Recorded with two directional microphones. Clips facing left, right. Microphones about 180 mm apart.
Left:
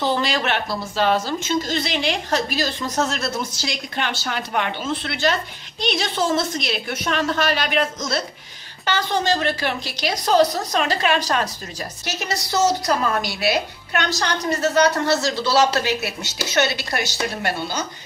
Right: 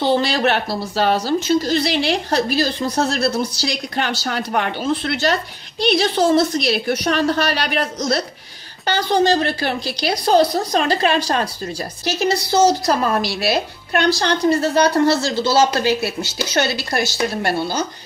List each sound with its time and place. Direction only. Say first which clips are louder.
0.0 s a woman's voice: right 5 dB; 35° right (ahead or behind)